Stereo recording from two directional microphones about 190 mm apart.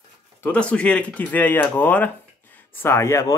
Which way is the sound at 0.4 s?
5° left (ahead or behind).